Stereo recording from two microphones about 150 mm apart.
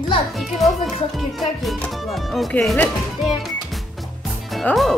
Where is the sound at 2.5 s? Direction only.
5° left (ahead or behind).